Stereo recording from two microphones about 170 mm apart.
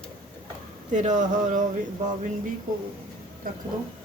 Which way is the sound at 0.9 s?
45° right (ahead or behind).